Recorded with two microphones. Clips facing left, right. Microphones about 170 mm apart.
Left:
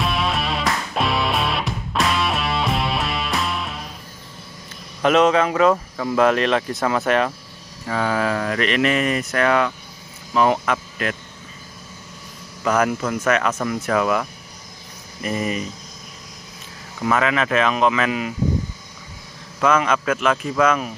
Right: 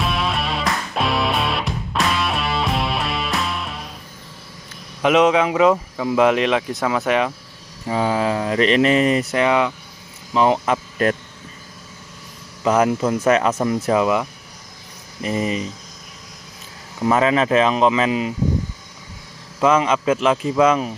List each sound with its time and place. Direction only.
0.0 s music: centre (ahead or behind)
5.0 s speech: 15° right (ahead or behind)
7.8 s speech: 20° right (ahead or behind)
12.6 s speech: 25° right (ahead or behind)
15.2 s speech: 25° right (ahead or behind)
17.0 s speech: 30° right (ahead or behind)
19.6 s speech: 25° right (ahead or behind)